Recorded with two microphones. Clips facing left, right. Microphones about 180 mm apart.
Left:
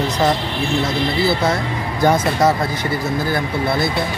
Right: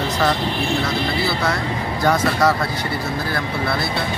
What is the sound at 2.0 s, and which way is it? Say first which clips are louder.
Speech: left 3 dB; 20° left (ahead or behind).